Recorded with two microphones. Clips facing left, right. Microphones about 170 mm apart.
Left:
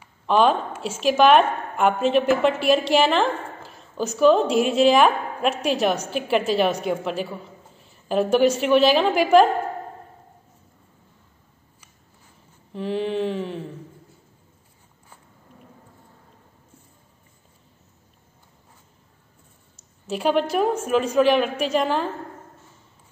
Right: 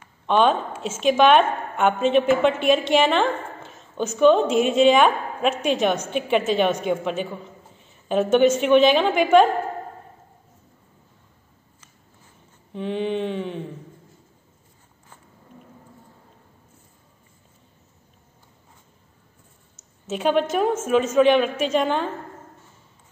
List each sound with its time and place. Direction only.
0.0 s a woman's voice: 5° left (ahead or behind)
12.7 s a woman's voice: centre (ahead or behind)
20.1 s a woman's voice: centre (ahead or behind)